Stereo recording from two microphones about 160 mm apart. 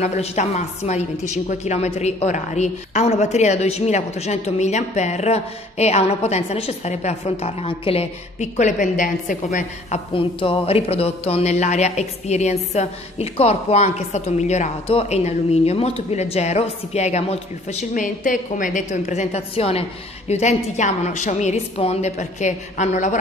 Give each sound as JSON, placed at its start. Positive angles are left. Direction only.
{"t": 0.0, "sound": "a woman's voice", "side_deg": 45}
{"t": 10.1, "sound": "a woman's voice", "side_deg": 35}